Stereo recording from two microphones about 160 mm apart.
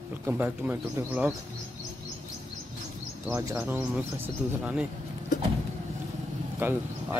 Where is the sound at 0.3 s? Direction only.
10° right (ahead or behind).